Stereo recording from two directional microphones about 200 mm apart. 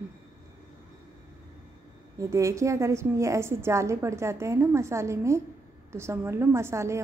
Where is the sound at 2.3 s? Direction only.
15° right (ahead or behind).